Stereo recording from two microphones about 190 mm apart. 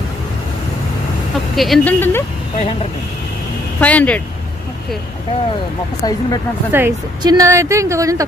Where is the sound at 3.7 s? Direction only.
10° left (ahead or behind).